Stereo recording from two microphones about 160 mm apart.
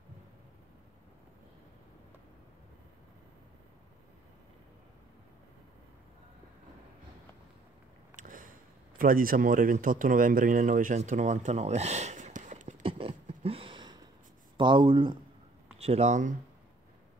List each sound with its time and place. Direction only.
8.2 s speech: 55° right (ahead or behind)
12.8 s a sound: 35° right (ahead or behind)
14.6 s speech: 30° right (ahead or behind)
15.8 s speech: 40° right (ahead or behind)